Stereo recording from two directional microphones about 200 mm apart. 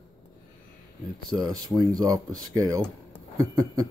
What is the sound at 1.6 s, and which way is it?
Speech, 20° right (ahead or behind).